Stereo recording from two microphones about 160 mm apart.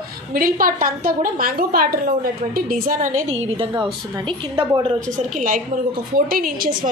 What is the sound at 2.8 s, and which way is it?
Speech, 55° right (ahead or behind).